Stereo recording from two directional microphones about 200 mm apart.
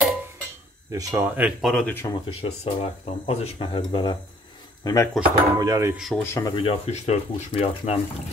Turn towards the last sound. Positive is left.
turn(degrees=30)  # may be behind; listen again after turning